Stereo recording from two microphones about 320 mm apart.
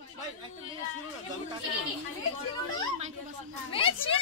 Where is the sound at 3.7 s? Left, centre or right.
Centre.